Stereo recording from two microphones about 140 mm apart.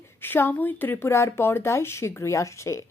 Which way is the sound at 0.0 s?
15° left (ahead or behind).